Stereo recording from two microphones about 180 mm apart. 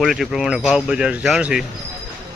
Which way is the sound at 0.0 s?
Centre (ahead or behind).